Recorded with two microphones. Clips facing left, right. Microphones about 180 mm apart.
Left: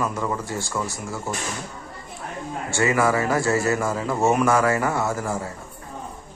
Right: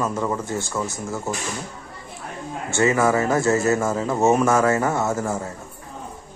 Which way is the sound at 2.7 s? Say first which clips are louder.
Right 2 dB; 20° right (ahead or behind).